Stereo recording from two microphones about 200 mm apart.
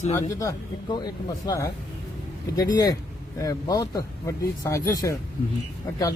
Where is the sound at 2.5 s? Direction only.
20° left (ahead or behind).